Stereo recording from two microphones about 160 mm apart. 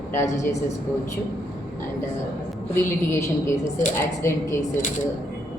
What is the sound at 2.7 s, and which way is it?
A woman's voice, 15° left (ahead or behind).